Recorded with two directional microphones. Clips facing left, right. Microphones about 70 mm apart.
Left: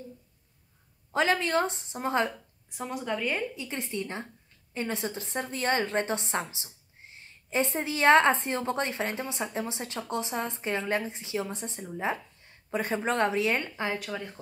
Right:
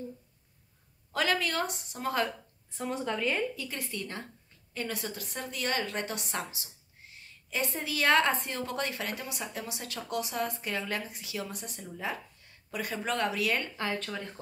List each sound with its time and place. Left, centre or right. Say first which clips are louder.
1.1 s a woman's voice: left 4 dB; left
2.8 s speech: even; centre
3.5 s a woman's voice: left 4 dB; left
13.9 s speech: left 2 dB; centre